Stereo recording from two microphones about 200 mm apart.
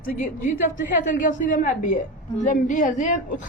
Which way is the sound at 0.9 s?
40° left (ahead or behind).